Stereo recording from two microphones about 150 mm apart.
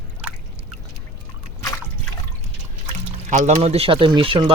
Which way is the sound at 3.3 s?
55° right (ahead or behind).